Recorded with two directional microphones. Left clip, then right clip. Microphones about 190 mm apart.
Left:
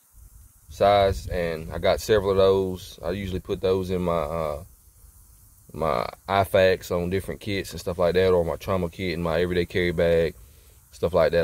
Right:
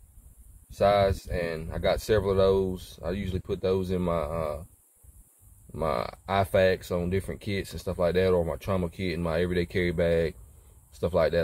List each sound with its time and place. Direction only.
0.7 s speech: 15° left (ahead or behind)
5.7 s speech: 15° left (ahead or behind)